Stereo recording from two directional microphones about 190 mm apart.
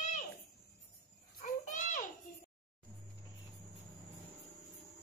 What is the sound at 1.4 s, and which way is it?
Children playing, 45° left (ahead or behind).